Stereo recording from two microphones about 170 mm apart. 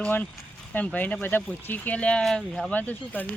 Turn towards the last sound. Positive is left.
turn(degrees=10)  # may be behind; listen again after turning